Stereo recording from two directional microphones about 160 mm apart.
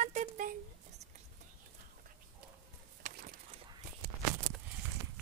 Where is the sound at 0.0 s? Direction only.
50° right (ahead or behind).